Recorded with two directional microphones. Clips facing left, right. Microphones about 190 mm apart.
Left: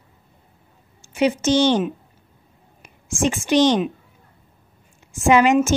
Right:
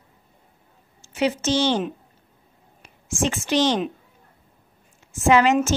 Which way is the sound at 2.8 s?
15° left (ahead or behind).